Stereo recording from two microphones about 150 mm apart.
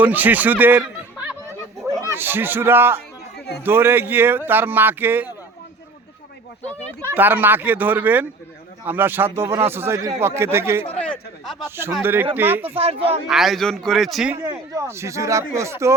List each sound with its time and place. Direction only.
0.0 s speech: 10° right (ahead or behind)
2.1 s speech: 15° right (ahead or behind)
3.3 s a sound: 90° left
3.6 s speech: 15° right (ahead or behind)
7.1 s speech: 15° right (ahead or behind)
10.9 s a man's voice: 5° left (ahead or behind)
12.0 s speech: 15° right (ahead or behind)
12.6 s speech: 40° right (ahead or behind)
13.2 s a man's voice: centre (ahead or behind)
14.4 s speech: 20° right (ahead or behind)